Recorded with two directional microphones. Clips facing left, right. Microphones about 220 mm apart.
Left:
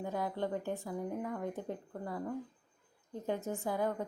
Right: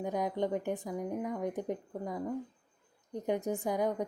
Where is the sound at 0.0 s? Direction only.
15° right (ahead or behind).